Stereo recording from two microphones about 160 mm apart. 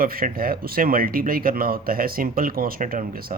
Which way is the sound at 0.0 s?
65° right (ahead or behind).